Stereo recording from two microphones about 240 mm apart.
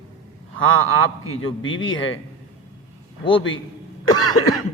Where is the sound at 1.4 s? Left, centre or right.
Left.